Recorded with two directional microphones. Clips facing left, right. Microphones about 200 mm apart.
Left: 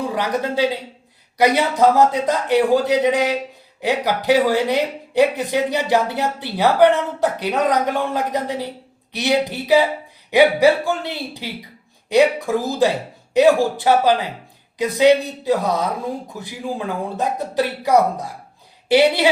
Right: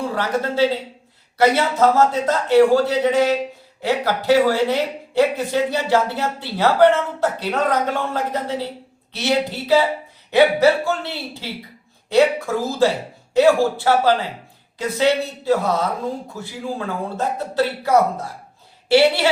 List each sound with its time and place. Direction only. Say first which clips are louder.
0.1 s speech: even; 15° left (ahead or behind)